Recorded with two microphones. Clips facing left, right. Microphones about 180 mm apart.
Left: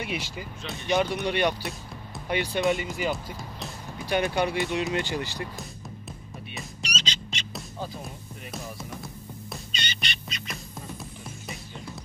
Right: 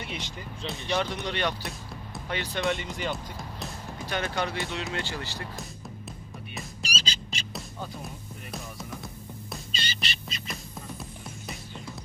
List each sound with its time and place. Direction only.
0.0 s speech: 10° left (ahead or behind)
4.1 s speech: 15° left (ahead or behind)
6.5 s music: 5° right (ahead or behind)
9.5 s music: centre (ahead or behind)